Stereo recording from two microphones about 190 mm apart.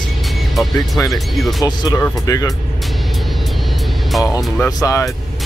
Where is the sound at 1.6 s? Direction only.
20° left (ahead or behind).